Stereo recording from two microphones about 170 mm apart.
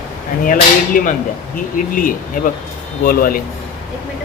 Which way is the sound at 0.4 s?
55° left (ahead or behind).